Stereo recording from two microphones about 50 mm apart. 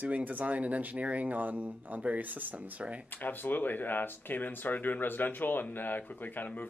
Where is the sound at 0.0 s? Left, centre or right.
Right.